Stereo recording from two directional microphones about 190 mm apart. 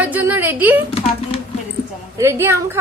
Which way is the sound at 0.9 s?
30° left (ahead or behind).